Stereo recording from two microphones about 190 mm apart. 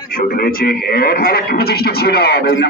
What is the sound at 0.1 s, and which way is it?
Speech, 50° left (ahead or behind).